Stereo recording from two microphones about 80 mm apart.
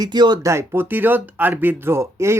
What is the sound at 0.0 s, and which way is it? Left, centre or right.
Speech, right.